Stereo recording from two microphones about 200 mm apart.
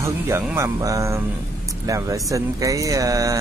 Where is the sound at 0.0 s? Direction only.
15° right (ahead or behind).